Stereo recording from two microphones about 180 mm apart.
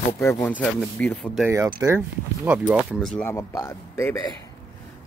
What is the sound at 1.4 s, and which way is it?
Speech, 15° right (ahead or behind).